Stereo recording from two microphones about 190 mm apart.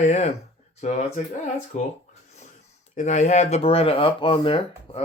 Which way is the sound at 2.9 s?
40° left (ahead or behind).